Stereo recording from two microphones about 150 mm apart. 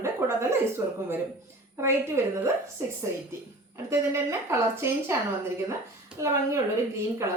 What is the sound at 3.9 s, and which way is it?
A woman's voice, 20° right (ahead or behind).